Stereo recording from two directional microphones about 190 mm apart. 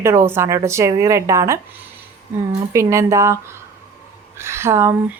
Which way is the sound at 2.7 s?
15° right (ahead or behind).